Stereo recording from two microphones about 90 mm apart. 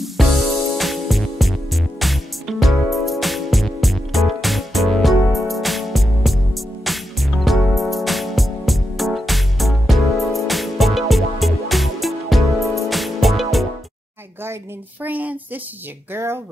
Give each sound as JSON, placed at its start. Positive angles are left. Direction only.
{"t": 0.0, "sound": "music", "side_deg": 0}
{"t": 14.4, "sound": "a sound", "side_deg": -20}
{"t": 16.1, "sound": "speech", "side_deg": -25}